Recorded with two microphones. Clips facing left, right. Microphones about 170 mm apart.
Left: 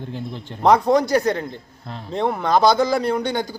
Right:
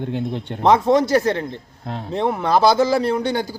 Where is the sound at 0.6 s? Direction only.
Centre (ahead or behind).